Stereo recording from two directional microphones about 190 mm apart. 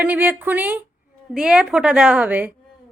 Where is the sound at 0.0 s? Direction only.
5° right (ahead or behind).